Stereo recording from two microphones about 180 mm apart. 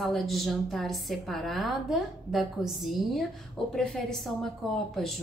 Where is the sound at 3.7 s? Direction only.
5° left (ahead or behind).